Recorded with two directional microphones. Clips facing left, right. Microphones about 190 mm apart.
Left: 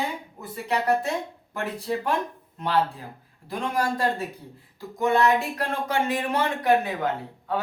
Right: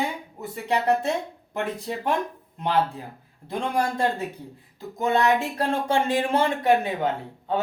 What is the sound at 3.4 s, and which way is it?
Speech, 25° right (ahead or behind).